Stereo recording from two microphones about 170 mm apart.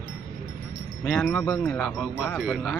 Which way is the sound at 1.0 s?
10° left (ahead or behind).